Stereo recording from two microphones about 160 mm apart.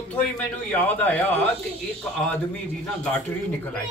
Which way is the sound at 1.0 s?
10° left (ahead or behind).